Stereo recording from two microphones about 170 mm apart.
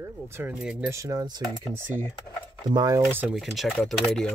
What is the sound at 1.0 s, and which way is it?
Speech, 20° right (ahead or behind).